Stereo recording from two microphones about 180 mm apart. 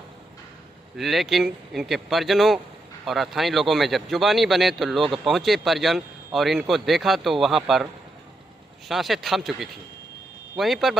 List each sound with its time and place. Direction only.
0.9 s a man's voice: centre (ahead or behind)